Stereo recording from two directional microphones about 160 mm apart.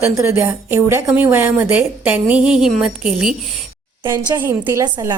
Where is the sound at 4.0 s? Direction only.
25° right (ahead or behind).